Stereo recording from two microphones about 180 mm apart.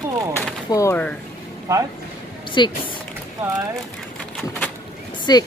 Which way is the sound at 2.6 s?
25° left (ahead or behind).